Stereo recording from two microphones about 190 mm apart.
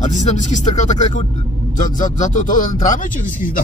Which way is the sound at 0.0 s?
40° left (ahead or behind).